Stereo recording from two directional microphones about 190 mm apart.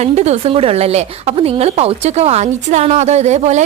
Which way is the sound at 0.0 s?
35° right (ahead or behind).